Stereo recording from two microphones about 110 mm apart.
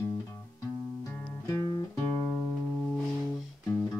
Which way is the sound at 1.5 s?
40° left (ahead or behind).